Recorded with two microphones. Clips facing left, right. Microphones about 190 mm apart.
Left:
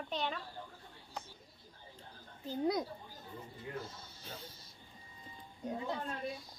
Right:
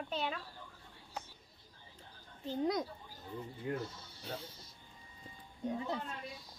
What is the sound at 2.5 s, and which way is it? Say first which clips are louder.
Speech: even; 5° left (ahead or behind).